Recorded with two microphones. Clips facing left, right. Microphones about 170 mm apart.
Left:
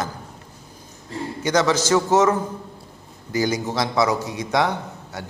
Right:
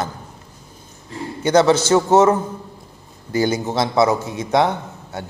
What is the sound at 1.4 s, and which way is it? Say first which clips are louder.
Speech: right 6 dB; 30° right (ahead or behind).